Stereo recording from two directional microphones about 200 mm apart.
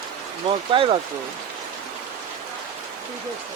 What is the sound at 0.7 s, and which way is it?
Speech, 25° right (ahead or behind).